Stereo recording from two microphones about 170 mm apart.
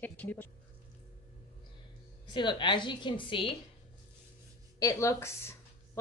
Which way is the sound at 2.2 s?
25° left (ahead or behind).